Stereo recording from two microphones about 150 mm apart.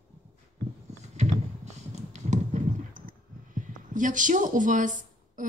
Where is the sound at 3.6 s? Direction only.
60° right (ahead or behind).